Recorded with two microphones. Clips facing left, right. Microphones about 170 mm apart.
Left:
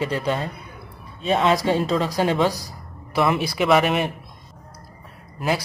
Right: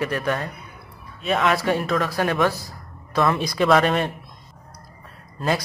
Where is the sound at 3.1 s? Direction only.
10° left (ahead or behind).